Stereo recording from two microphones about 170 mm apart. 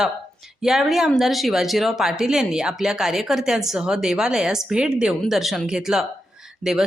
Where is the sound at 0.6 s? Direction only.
Centre (ahead or behind).